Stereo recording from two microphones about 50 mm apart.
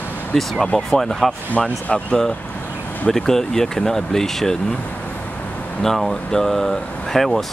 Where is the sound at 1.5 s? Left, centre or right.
Left.